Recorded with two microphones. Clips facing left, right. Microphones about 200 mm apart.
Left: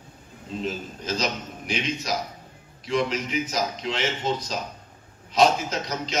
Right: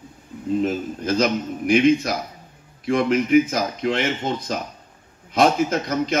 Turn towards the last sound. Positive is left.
turn(degrees=-55)  # may be behind; listen again after turning